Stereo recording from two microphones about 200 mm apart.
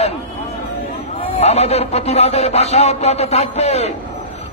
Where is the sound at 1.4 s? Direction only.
30° left (ahead or behind).